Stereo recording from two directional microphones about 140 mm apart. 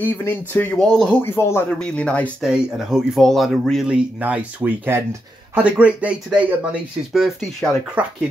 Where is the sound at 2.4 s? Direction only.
5° right (ahead or behind).